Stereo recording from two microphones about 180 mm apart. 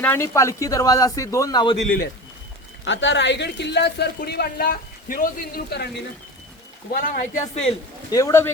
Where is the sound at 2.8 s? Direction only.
90° left; by 6.0 s 65° left (ahead or behind).